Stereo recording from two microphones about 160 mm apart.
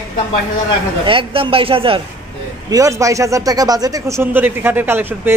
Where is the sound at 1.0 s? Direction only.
35° right (ahead or behind).